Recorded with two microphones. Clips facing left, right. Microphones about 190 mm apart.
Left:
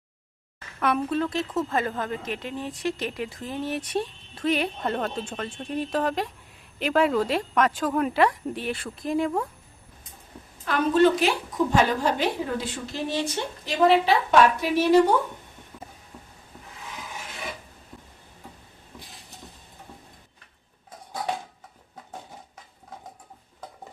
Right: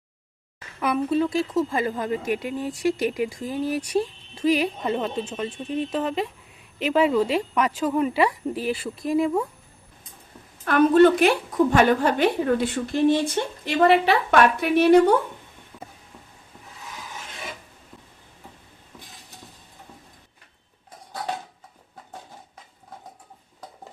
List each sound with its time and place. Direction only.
0.8 s a woman's voice: 5° right (ahead or behind)
10.7 s a woman's voice: 55° right (ahead or behind)
15.7 s a sound: centre (ahead or behind)